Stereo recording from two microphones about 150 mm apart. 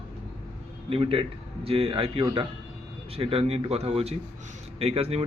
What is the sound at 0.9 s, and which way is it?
Speech, 40° right (ahead or behind).